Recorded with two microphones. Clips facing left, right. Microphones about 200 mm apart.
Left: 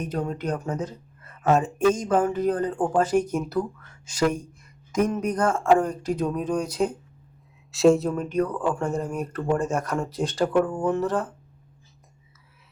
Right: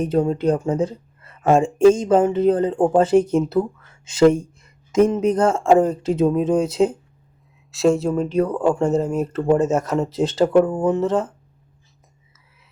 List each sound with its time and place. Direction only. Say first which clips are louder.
0.0 s speech: right 10 dB; 25° right (ahead or behind)
7.7 s speech: even; centre (ahead or behind)
8.1 s speech: right 5 dB; 25° right (ahead or behind)